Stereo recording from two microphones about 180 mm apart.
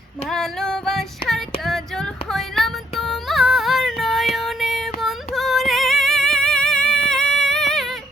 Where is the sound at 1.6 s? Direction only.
Centre (ahead or behind).